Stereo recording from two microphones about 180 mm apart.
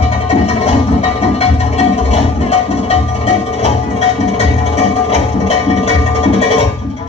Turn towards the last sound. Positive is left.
turn(degrees=30)  # may be behind; listen again after turning